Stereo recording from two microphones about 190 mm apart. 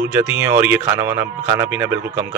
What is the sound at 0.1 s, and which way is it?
Speech, 10° right (ahead or behind).